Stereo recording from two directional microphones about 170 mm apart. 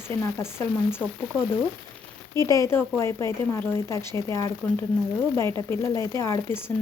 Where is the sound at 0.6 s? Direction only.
15° left (ahead or behind).